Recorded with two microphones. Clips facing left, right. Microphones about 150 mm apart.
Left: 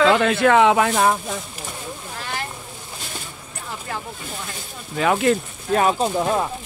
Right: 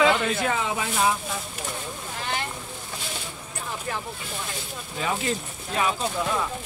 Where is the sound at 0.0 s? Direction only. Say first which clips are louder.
Left 6 dB; 90° left; by 1.1 s 65° left (ahead or behind).